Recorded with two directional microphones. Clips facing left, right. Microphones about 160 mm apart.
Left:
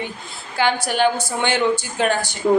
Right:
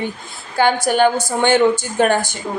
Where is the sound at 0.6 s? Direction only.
45° right (ahead or behind).